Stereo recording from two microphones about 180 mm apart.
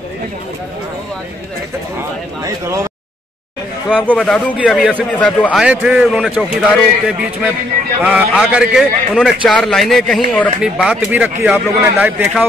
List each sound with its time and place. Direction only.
2.4 s a man's voice: 15° right (ahead or behind)
4.0 s a man's voice: 5° left (ahead or behind); by 12.3 s 10° right (ahead or behind)